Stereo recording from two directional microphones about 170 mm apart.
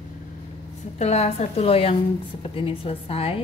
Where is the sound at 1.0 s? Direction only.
40° left (ahead or behind).